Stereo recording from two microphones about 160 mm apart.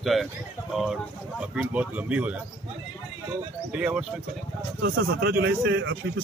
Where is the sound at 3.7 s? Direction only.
5° right (ahead or behind).